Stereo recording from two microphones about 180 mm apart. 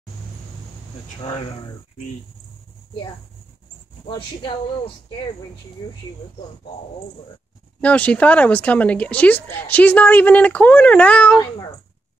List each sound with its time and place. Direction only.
1.2 s speech: 35° left (ahead or behind)
4.1 s speech: 25° left (ahead or behind)
7.8 s speech: 10° left (ahead or behind)